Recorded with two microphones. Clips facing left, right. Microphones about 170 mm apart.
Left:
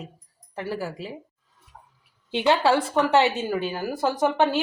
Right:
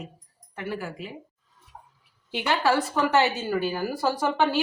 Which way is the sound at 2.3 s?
20° left (ahead or behind).